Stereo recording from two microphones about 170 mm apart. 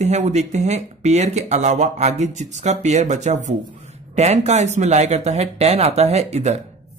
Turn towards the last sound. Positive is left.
turn(degrees=-40)  # may be behind; listen again after turning